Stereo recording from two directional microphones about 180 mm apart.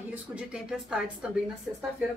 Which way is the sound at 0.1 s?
5° right (ahead or behind).